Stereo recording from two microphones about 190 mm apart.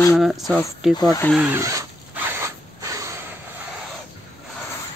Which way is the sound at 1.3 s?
10° right (ahead or behind).